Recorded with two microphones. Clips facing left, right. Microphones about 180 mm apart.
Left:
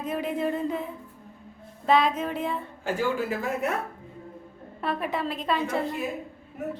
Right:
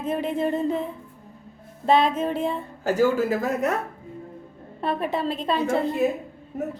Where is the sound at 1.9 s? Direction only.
25° right (ahead or behind).